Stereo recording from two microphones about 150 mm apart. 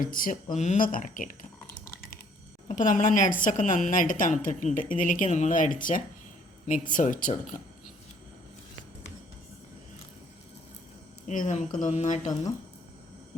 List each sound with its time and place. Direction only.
0.0 s a woman's voice: 65° left (ahead or behind)
0.5 s a woman's voice: 50° left (ahead or behind)
2.6 s a woman's voice: 60° left (ahead or behind)
11.3 s mantra: 55° left (ahead or behind)